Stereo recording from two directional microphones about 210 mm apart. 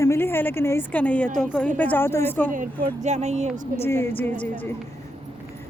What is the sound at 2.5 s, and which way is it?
Speech, 40° right (ahead or behind).